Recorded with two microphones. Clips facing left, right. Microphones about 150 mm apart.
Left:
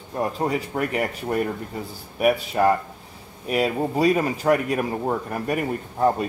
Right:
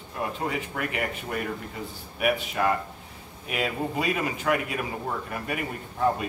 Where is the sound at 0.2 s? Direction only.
40° left (ahead or behind).